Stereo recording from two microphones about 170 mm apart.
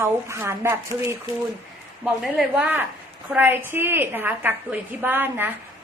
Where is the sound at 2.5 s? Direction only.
10° right (ahead or behind).